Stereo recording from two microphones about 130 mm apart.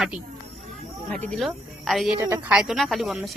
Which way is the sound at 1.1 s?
Centre (ahead or behind).